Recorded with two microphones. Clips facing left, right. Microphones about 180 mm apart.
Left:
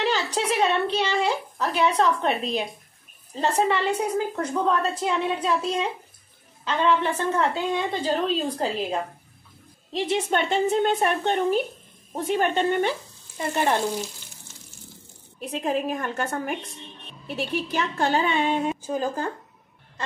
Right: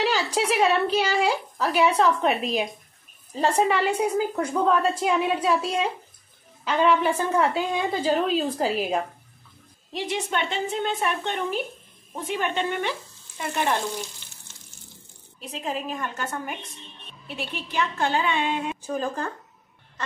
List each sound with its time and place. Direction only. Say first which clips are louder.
0.0 s a sound: right 1 dB; 10° right (ahead or behind)
3.3 s a woman's voice: right 1 dB; 10° right (ahead or behind)
10.3 s a woman's voice: left 7 dB; 45° left (ahead or behind)
15.6 s a woman's voice: left 4 dB; 50° left (ahead or behind)
17.6 s a woman's voice: right 2 dB; 40° left (ahead or behind)
18.9 s speech: left 1 dB; 25° left (ahead or behind)